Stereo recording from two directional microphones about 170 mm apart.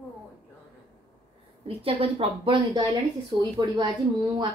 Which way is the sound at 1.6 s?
35° right (ahead or behind).